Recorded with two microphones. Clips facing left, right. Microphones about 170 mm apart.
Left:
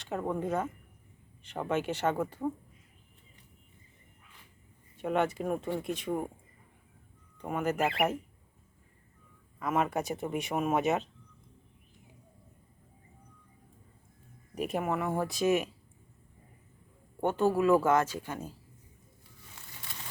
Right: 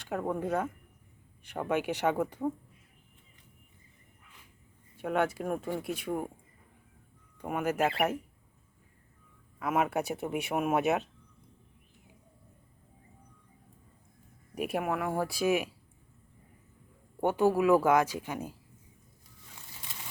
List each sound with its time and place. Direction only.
0.0 s speech: 5° right (ahead or behind)
4.9 s speech: 5° right (ahead or behind)
7.3 s speech: 10° right (ahead or behind)
9.6 s speech: 5° right (ahead or behind)
14.5 s speech: 5° right (ahead or behind)
17.2 s speech: 10° right (ahead or behind)